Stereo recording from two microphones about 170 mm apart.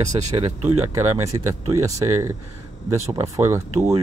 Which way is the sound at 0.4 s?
35° right (ahead or behind).